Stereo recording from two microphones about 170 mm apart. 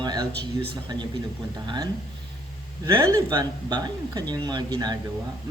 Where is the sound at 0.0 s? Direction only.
25° right (ahead or behind).